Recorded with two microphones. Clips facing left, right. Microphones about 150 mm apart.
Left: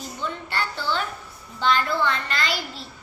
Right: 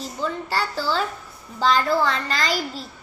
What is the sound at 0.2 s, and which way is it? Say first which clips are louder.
Child singing: right 4 dB; 35° right (ahead or behind).